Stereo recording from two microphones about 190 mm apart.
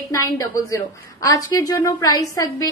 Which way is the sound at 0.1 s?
15° left (ahead or behind).